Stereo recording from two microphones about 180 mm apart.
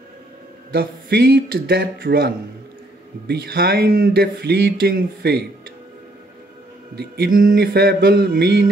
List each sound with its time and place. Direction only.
0.7 s speech: 60° right (ahead or behind)
7.0 s speech: 55° right (ahead or behind)